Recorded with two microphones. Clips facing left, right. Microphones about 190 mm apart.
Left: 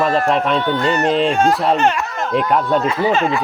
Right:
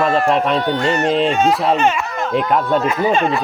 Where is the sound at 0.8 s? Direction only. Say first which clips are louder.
Even; 35° left (ahead or behind).